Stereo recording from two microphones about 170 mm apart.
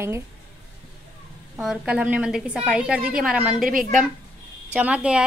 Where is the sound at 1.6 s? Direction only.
5° right (ahead or behind).